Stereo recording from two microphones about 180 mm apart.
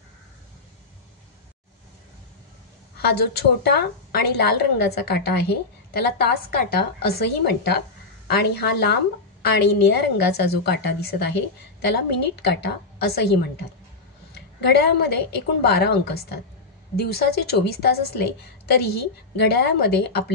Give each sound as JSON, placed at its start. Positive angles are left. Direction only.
{"t": 3.0, "sound": "a woman's voice", "side_deg": 60}
{"t": 14.3, "sound": "a sound", "side_deg": 65}
{"t": 15.6, "sound": "a woman's voice", "side_deg": 65}